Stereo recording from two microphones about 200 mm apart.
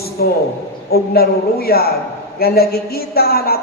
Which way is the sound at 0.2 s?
50° left (ahead or behind).